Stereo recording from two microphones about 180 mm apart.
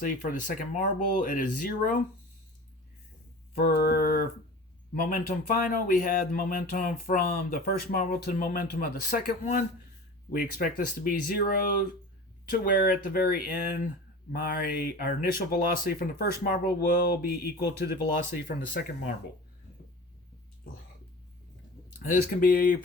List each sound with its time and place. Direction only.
0.0 s speech: 50° left (ahead or behind)
3.5 s mantra: 60° left (ahead or behind)
4.9 s speech: 50° left (ahead or behind)
10.3 s speech: 50° left (ahead or behind)
21.9 s speech: 50° left (ahead or behind)